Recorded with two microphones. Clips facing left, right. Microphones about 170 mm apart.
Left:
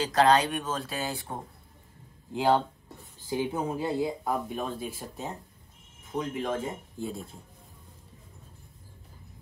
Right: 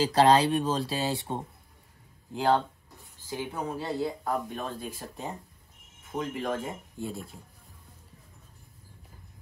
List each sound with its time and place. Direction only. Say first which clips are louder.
0.1 s speech: even; 30° right (ahead or behind)
2.3 s speech: left 1 dB; 5° left (ahead or behind)
3.3 s speech: left 4 dB; 20° left (ahead or behind)
4.3 s speech: left 1 dB; 5° left (ahead or behind)